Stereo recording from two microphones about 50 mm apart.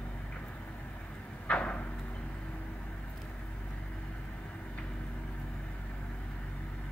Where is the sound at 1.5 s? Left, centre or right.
Left.